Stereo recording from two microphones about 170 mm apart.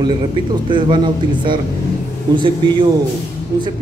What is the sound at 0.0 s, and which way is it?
Speech, 25° right (ahead or behind).